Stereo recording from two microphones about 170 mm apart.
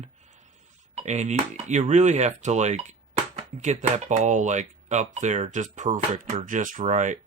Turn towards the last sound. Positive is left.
turn(degrees=-45)  # may be behind; listen again after turning